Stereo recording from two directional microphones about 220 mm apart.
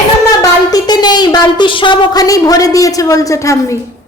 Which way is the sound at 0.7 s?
20° left (ahead or behind).